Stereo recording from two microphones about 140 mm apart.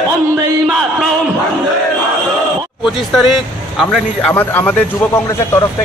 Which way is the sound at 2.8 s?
Centre (ahead or behind).